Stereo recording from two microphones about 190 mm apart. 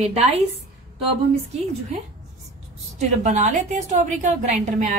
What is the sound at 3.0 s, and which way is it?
A woman's voice, 40° right (ahead or behind).